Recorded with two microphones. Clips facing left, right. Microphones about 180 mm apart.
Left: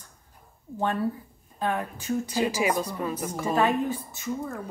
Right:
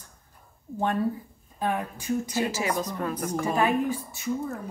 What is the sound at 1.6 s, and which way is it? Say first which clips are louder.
Speech: even; 10° right (ahead or behind).